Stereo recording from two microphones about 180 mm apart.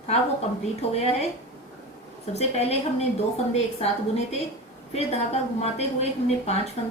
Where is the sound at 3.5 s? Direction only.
35° left (ahead or behind).